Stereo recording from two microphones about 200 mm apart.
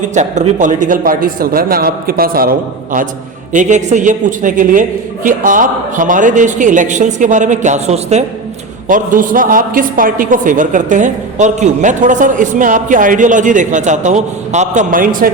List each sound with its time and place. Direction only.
0.1 s a man's voice: 35° right (ahead or behind)